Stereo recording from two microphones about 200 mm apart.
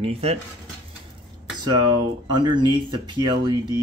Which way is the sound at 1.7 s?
20° right (ahead or behind).